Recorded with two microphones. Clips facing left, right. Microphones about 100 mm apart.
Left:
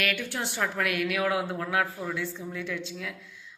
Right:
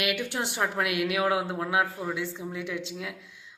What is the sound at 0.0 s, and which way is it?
A woman's voice, 15° right (ahead or behind).